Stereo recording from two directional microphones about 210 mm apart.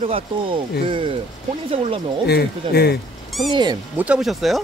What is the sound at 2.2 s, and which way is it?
Speech, 50° left (ahead or behind).